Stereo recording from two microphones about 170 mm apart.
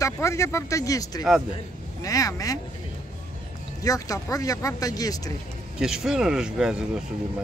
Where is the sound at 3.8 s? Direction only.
20° left (ahead or behind).